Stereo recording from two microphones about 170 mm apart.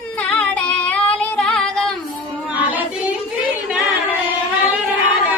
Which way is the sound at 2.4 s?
10° right (ahead or behind).